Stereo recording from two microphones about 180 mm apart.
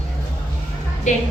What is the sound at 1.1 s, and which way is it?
Music, 40° left (ahead or behind).